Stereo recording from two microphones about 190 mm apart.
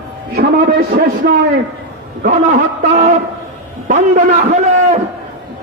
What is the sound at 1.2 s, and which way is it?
Speech, 55° right (ahead or behind).